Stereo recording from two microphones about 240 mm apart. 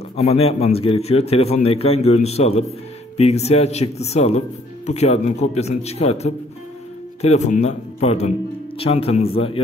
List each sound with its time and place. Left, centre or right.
0.1 s a man's voice: left